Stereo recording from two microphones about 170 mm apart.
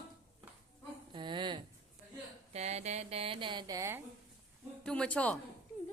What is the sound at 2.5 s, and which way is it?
Speech, 40° right (ahead or behind).